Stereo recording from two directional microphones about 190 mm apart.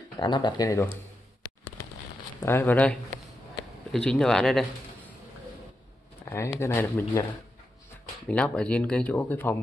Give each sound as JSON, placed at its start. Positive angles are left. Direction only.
{"t": 0.2, "sound": "speech", "side_deg": 25}
{"t": 2.4, "sound": "speech", "side_deg": 10}
{"t": 6.3, "sound": "speech", "side_deg": 15}
{"t": 8.3, "sound": "speech", "side_deg": 5}